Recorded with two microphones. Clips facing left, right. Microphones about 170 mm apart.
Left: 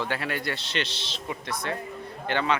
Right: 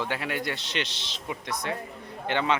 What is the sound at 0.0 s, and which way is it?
A man's voice, 15° right (ahead or behind).